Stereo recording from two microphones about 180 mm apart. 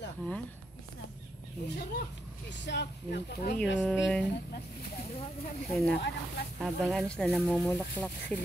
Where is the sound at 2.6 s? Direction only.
70° left (ahead or behind).